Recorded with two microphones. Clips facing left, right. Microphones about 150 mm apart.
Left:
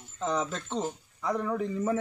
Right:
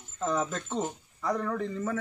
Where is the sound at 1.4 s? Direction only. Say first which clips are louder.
Left 2 dB; 10° left (ahead or behind).